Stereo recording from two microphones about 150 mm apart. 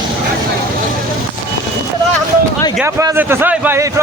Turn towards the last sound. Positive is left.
turn(degrees=-15)  # may be behind; listen again after turning